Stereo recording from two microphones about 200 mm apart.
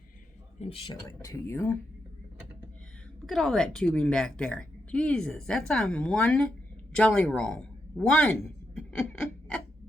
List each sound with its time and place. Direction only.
0.6 s a man's voice: 30° left (ahead or behind)
1.2 s speech: 15° left (ahead or behind)
3.2 s a woman's voice: centre (ahead or behind)
9.0 s a sound: 5° left (ahead or behind)